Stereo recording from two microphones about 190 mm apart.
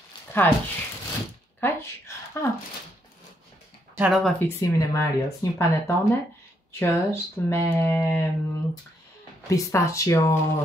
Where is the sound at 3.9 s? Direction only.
5° right (ahead or behind).